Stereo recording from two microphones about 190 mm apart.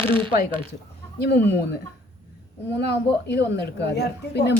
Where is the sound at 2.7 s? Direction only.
60° left (ahead or behind).